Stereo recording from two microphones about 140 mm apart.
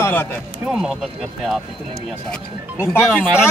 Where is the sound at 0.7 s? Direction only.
Centre (ahead or behind).